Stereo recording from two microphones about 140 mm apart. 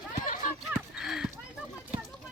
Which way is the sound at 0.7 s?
Centre (ahead or behind).